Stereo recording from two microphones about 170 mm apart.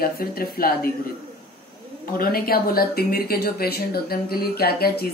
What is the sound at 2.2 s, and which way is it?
Speech, 60° left (ahead or behind).